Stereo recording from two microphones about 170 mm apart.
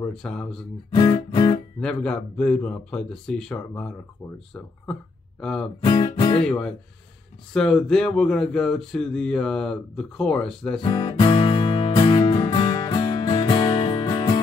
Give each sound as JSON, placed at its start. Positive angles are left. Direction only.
{"t": 0.0, "sound": "speech", "side_deg": 5}
{"t": 0.9, "sound": "music", "side_deg": 25}
{"t": 1.8, "sound": "speech", "side_deg": 5}
{"t": 5.4, "sound": "speech", "side_deg": 5}
{"t": 5.9, "sound": "music", "side_deg": 30}
{"t": 6.4, "sound": "speech", "side_deg": 5}
{"t": 10.8, "sound": "music", "side_deg": 30}